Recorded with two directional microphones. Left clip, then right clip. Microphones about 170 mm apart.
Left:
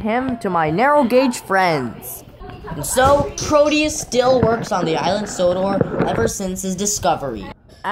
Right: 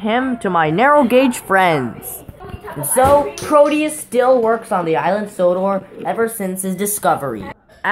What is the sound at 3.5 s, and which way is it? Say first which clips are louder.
A woman's voice: right 2 dB; 40° left (ahead or behind).